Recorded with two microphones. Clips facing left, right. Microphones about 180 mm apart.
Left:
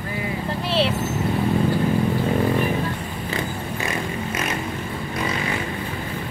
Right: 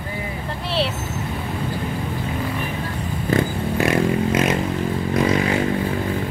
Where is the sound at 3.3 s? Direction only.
65° right (ahead or behind).